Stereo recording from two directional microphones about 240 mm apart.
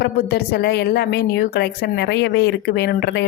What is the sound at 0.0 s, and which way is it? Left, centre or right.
A woman's voice, left.